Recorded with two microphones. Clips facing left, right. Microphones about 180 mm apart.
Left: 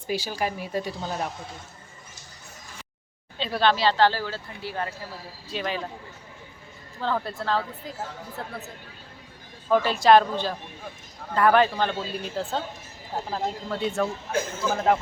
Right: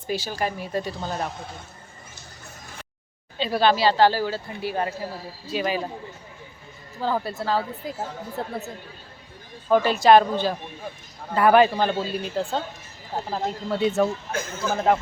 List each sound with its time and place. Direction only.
0.1 s speech: 10° left (ahead or behind)
3.3 s speech: 5° right (ahead or behind)
7.0 s speech: 5° right (ahead or behind)
8.4 s speech: 20° right (ahead or behind)
9.7 s speech: centre (ahead or behind)